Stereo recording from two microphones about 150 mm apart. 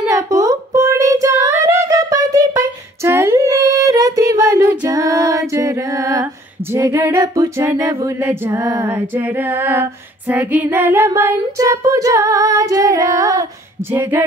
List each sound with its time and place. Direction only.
0.1 s a sound: 20° right (ahead or behind)
2.5 s singing: 15° right (ahead or behind)
6.7 s female singing: 15° right (ahead or behind)